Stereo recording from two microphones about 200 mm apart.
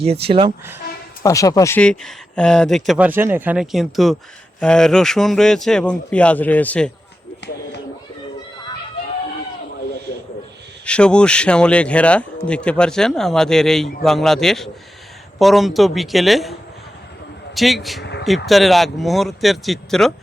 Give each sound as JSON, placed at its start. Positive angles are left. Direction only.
{"t": 0.0, "sound": "speech", "side_deg": -30}
{"t": 1.2, "sound": "a man's voice", "side_deg": 15}
{"t": 10.8, "sound": "a man's voice", "side_deg": 5}
{"t": 18.0, "sound": "a sound", "side_deg": 60}
{"t": 18.4, "sound": "a man's voice", "side_deg": 0}